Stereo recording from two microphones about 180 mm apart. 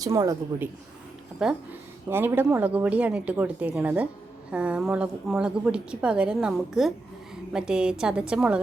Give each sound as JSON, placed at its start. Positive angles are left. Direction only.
{"t": 0.0, "sound": "a woman's voice", "side_deg": -20}
{"t": 1.4, "sound": "a woman's voice", "side_deg": -5}